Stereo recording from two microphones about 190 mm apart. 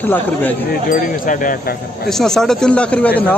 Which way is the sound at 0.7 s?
45° left (ahead or behind).